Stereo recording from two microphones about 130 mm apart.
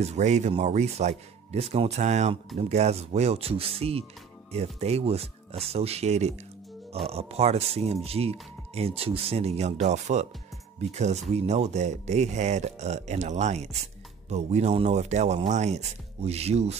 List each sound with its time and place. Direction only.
0.0 s speech: 60° right (ahead or behind)